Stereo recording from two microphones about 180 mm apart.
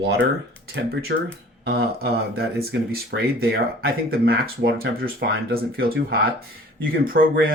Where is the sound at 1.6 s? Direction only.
65° right (ahead or behind).